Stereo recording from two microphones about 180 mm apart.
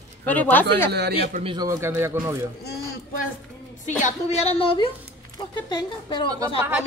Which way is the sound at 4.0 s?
35° left (ahead or behind).